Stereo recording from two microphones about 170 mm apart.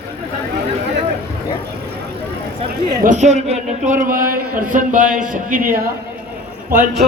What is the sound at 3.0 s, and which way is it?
A man's voice, 45° right (ahead or behind).